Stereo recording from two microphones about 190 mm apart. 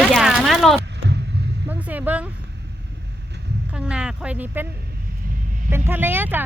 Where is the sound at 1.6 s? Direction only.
10° right (ahead or behind).